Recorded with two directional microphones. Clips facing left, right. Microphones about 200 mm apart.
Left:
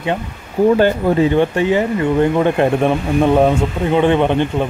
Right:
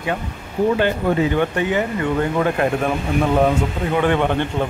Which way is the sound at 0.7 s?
35° left (ahead or behind).